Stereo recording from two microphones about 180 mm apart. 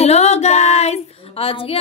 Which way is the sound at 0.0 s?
35° left (ahead or behind).